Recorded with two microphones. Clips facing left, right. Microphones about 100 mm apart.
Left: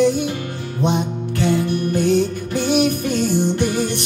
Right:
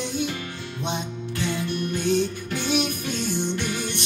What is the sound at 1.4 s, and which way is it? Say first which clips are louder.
Music: left 8 dB; 40° left (ahead or behind).